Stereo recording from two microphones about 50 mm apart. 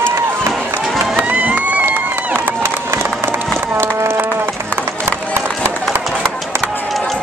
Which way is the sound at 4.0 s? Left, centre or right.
Right.